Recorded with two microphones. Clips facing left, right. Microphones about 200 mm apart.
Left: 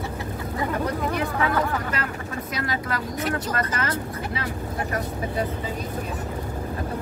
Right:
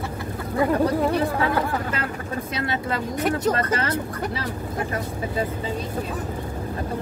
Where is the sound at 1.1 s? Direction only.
30° right (ahead or behind).